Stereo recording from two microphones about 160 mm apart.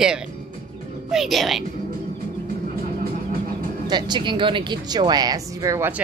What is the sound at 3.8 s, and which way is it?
Speech, 25° right (ahead or behind).